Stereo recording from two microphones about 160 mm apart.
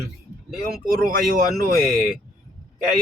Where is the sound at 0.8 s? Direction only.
65° right (ahead or behind).